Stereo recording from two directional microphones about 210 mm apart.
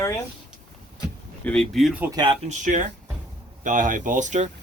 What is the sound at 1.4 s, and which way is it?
Speech, centre (ahead or behind).